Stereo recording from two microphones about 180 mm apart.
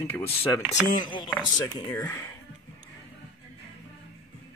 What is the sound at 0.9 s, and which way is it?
Speech, 25° left (ahead or behind).